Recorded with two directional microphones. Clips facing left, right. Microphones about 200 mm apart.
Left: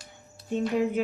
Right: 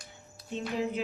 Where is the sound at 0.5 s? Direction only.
50° left (ahead or behind).